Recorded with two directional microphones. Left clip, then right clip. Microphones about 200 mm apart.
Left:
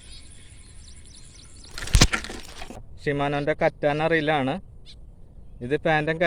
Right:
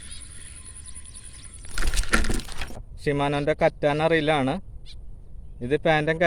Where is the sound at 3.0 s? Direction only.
5° right (ahead or behind).